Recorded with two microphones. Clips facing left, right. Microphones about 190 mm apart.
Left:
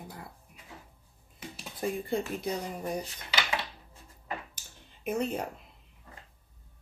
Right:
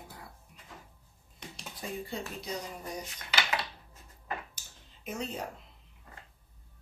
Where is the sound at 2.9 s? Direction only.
30° left (ahead or behind).